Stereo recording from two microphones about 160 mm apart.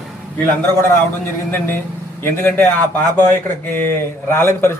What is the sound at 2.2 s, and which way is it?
Speech, 15° left (ahead or behind).